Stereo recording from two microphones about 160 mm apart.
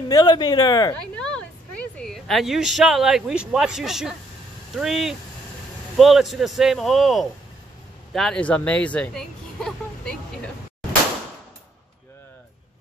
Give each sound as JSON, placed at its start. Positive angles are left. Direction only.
{"t": 0.1, "sound": "speech", "side_deg": 25}
{"t": 1.1, "sound": "a woman's voice", "side_deg": 5}